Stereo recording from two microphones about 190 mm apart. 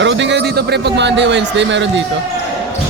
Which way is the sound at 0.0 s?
70° right (ahead or behind).